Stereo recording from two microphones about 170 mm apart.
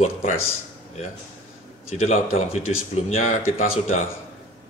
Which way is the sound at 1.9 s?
40° left (ahead or behind).